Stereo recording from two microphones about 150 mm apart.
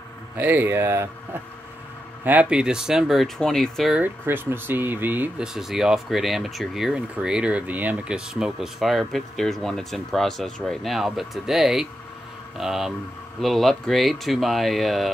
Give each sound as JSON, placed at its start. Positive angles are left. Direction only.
{"t": 0.4, "sound": "speech", "side_deg": -15}
{"t": 4.0, "sound": "speech", "side_deg": -15}